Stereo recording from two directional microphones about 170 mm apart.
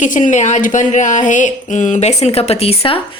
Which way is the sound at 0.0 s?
45° left (ahead or behind).